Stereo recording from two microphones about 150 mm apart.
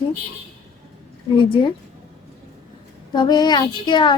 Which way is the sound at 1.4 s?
35° left (ahead or behind).